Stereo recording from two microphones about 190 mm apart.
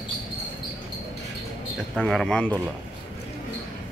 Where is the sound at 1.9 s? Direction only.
Centre (ahead or behind).